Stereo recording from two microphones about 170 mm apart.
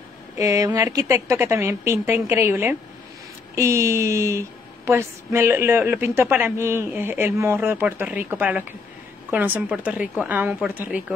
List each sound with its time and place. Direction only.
0.4 s a woman's voice: 20° right (ahead or behind)